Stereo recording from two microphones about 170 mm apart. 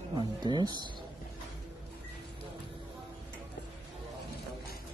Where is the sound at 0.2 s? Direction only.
25° right (ahead or behind).